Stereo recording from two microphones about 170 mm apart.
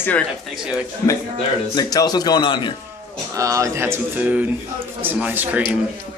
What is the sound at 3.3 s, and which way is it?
Speech, 20° right (ahead or behind).